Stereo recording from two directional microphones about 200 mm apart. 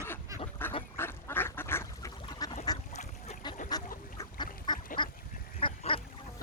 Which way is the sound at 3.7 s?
20° left (ahead or behind).